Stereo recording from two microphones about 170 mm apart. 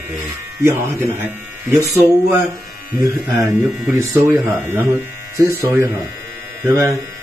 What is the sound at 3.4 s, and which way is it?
Speech, 20° right (ahead or behind).